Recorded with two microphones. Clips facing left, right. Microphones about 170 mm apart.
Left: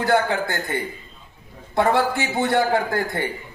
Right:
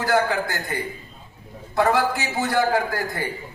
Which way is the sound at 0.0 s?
25° left (ahead or behind).